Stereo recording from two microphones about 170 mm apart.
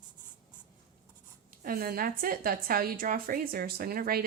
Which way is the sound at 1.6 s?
60° right (ahead or behind).